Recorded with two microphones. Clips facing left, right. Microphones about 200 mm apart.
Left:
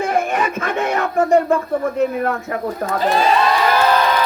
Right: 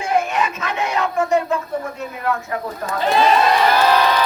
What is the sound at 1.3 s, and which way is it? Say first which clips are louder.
Speech: left 6 dB; 55° left (ahead or behind).